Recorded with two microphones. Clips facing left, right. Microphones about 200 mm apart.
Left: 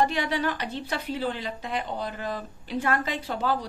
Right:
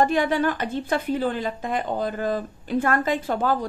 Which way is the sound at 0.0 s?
50° right (ahead or behind).